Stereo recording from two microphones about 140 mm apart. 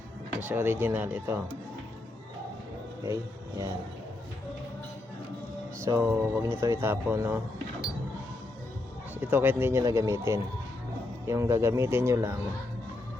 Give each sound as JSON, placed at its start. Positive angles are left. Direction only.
{"t": 0.3, "sound": "speech", "side_deg": -15}
{"t": 5.8, "sound": "speech", "side_deg": -15}
{"t": 9.2, "sound": "speech", "side_deg": -15}